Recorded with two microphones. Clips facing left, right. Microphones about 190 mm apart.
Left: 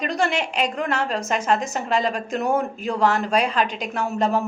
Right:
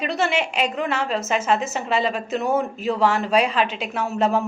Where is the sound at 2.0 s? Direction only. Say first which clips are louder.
Right 1 dB; 40° left (ahead or behind).